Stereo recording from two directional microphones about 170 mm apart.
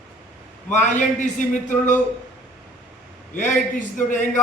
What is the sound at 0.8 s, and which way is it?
Speech, 45° left (ahead or behind).